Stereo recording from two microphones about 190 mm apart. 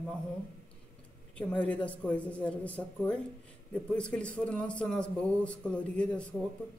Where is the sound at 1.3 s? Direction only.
5° left (ahead or behind).